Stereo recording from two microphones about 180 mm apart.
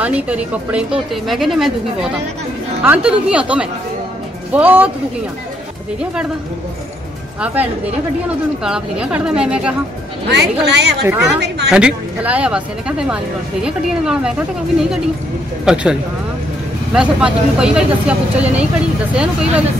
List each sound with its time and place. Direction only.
0.0 s speech: 5° right (ahead or behind)
7.3 s speech: 5° right (ahead or behind)
8.6 s speech: 5° right (ahead or behind)
10.3 s a woman's voice: 70° right (ahead or behind)
11.1 s speech: 15° right (ahead or behind)
11.4 s a sound: 70° right (ahead or behind)
11.7 s speech: 5° right (ahead or behind)
15.6 s speech: 5° right (ahead or behind)